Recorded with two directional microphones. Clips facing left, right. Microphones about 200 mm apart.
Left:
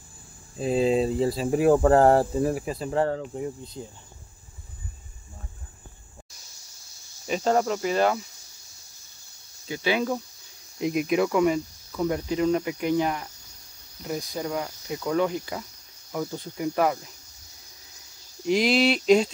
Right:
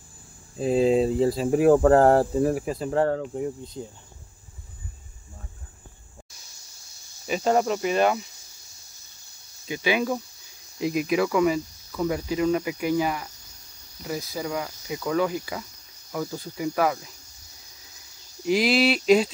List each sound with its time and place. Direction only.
0.6 s speech: 50° right (ahead or behind)
7.2 s cricket: 5° right (ahead or behind)
7.5 s cricket: 20° right (ahead or behind)
9.7 s cricket: 10° right (ahead or behind)
10.8 s cricket: centre (ahead or behind)
18.4 s cricket: 5° right (ahead or behind)